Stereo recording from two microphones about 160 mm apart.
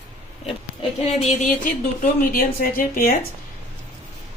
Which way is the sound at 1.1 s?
45° left (ahead or behind).